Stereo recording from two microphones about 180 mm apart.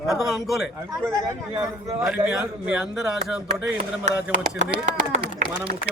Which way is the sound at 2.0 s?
5° right (ahead or behind).